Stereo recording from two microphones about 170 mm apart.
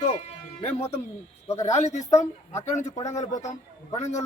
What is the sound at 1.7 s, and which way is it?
Speech, 45° left (ahead or behind).